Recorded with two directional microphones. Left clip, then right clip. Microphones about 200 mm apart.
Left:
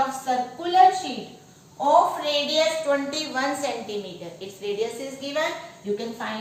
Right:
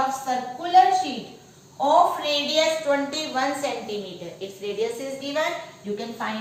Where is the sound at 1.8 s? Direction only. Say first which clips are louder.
Even; centre (ahead or behind).